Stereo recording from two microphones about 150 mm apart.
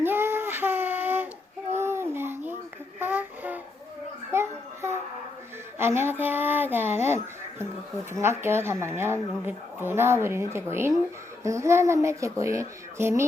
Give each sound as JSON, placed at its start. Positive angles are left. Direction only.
{"t": 0.0, "sound": "child singing", "side_deg": -15}
{"t": 1.7, "sound": "babbling", "side_deg": -15}
{"t": 3.0, "sound": "a sound", "side_deg": -15}
{"t": 4.3, "sound": "child singing", "side_deg": -15}
{"t": 5.8, "sound": "a woman's voice", "side_deg": -15}
{"t": 8.1, "sound": "a woman's voice", "side_deg": -15}